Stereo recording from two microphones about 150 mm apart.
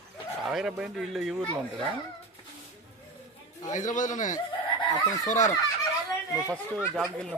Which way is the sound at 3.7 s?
55° left (ahead or behind).